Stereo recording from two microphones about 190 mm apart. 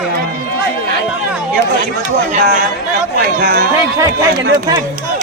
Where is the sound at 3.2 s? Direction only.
50° right (ahead or behind).